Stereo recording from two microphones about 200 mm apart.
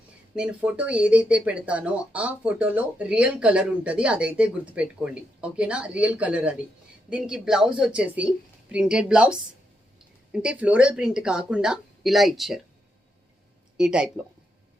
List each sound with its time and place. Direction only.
0.3 s speech: 5° right (ahead or behind)
13.7 s speech: 5° right (ahead or behind)